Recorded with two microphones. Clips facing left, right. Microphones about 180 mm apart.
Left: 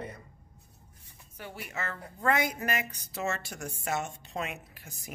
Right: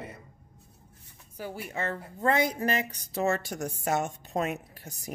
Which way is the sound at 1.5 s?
30° right (ahead or behind).